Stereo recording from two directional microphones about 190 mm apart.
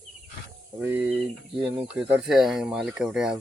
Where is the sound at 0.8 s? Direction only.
10° right (ahead or behind).